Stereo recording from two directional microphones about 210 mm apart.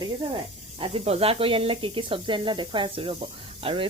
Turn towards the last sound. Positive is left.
turn(degrees=-25)  # may be behind; listen again after turning